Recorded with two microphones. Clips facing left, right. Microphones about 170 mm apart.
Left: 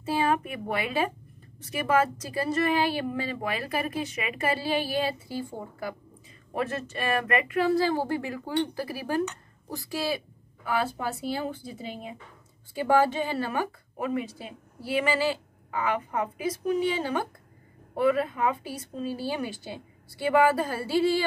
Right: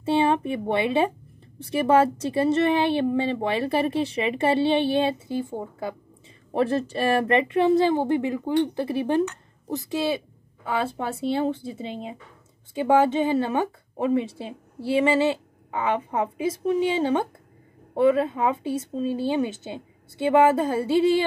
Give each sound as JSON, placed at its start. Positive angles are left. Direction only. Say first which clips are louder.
{"t": 0.0, "sound": "a woman's voice", "louder": "right 5 dB", "side_deg": -25}